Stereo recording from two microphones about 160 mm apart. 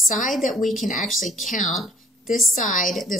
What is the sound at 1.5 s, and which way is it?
Speech, 55° left (ahead or behind).